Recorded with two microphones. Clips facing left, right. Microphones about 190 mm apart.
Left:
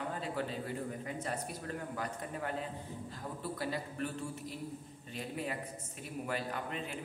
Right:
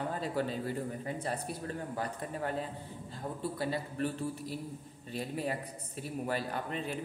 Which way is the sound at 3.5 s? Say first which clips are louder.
Right 3 dB; 30° right (ahead or behind).